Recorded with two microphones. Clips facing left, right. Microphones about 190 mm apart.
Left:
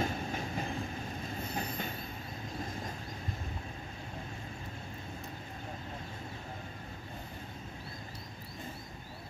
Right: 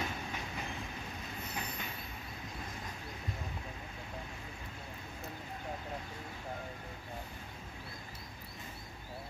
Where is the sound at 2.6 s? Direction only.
45° left (ahead or behind).